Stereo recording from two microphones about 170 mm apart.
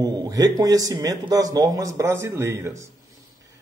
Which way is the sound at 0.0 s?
20° right (ahead or behind).